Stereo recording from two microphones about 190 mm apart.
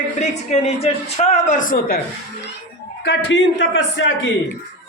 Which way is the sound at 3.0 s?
65° left (ahead or behind).